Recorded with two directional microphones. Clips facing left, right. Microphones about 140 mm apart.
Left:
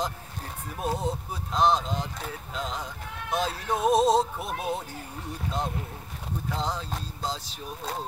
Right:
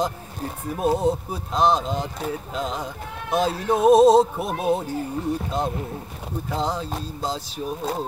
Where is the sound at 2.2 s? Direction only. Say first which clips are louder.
Right 7 dB; 15° right (ahead or behind).